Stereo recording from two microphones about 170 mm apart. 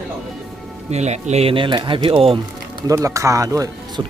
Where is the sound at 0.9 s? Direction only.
40° right (ahead or behind).